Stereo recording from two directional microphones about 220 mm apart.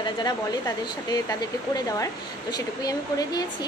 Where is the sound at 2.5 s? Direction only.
15° left (ahead or behind).